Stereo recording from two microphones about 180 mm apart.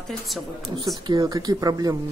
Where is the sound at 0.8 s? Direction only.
20° right (ahead or behind).